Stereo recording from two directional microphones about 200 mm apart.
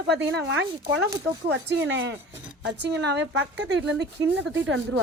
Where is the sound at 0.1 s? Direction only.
65° right (ahead or behind).